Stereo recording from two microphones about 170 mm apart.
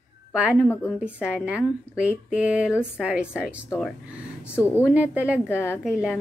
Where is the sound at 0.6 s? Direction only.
10° left (ahead or behind).